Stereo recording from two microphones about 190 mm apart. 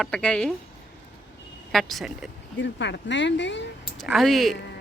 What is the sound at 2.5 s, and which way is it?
Speech, 70° left (ahead or behind).